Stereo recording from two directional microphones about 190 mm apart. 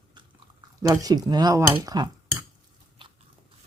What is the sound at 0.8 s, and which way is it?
Speech, 20° right (ahead or behind).